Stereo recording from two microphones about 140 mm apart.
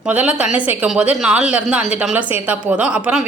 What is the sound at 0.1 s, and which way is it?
A woman's voice, 10° right (ahead or behind).